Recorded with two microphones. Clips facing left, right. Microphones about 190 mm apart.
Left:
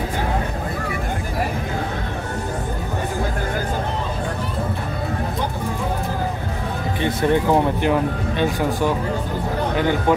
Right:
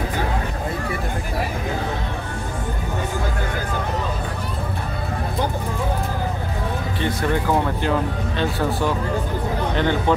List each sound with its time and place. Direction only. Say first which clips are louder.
7.0 s speech: left 4 dB; 20° left (ahead or behind)